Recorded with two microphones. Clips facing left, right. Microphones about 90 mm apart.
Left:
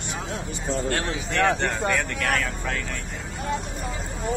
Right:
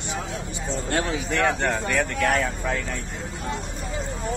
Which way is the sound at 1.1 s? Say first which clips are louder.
Left 2 dB; centre (ahead or behind).